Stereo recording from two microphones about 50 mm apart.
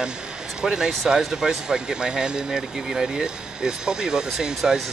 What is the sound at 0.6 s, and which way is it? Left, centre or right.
Speech, centre.